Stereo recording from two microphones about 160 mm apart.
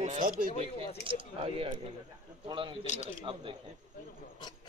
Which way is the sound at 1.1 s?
35° right (ahead or behind).